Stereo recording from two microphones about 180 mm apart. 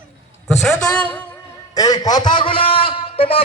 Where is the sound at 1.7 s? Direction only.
20° left (ahead or behind).